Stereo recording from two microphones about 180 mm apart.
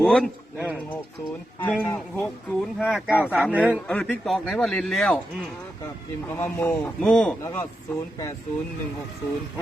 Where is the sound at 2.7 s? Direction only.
Centre (ahead or behind).